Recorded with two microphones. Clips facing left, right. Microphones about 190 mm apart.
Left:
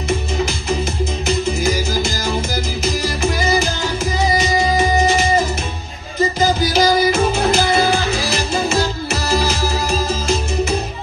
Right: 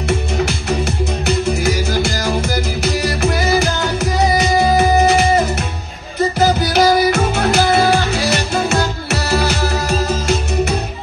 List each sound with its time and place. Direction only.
1.2 s music: 65° right (ahead or behind)
6.6 s music: 65° right (ahead or behind)